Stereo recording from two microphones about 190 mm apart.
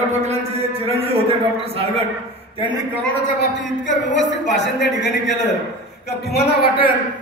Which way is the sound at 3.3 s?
70° left (ahead or behind).